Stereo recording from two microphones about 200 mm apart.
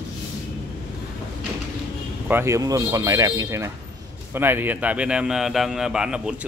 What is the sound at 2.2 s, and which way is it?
A man's voice, 10° right (ahead or behind).